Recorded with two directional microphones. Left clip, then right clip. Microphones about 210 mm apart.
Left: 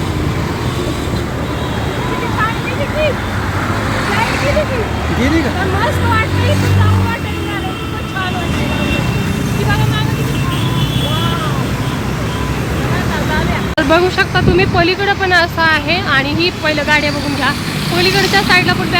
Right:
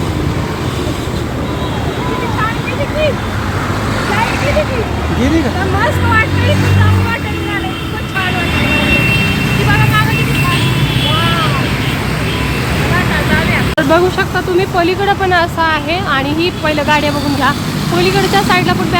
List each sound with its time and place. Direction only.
13.7 s speech: centre (ahead or behind)